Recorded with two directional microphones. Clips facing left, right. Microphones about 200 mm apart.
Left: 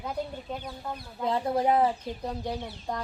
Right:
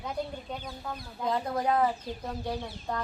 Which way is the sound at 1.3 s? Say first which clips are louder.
Left 3 dB; 25° left (ahead or behind).